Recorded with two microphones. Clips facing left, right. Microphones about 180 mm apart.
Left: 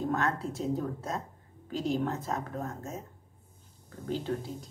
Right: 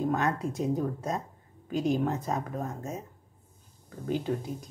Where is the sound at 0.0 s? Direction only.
15° right (ahead or behind).